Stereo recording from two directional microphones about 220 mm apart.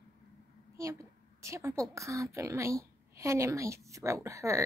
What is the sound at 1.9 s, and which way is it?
A woman's voice, 15° right (ahead or behind).